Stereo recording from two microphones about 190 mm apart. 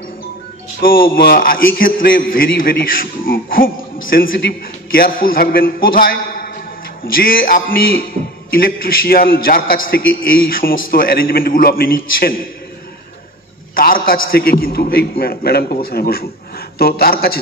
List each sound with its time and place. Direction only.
0.7 s a man's voice: 50° left (ahead or behind)
13.7 s a man's voice: 50° left (ahead or behind)